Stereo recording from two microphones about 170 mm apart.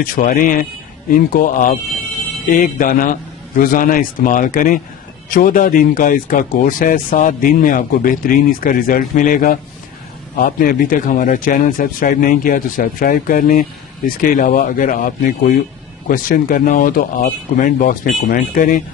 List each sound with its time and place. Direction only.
0.0 s speech: 55° left (ahead or behind)